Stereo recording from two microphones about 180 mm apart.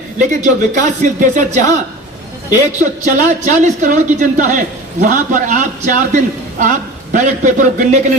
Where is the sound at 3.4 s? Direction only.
45° right (ahead or behind).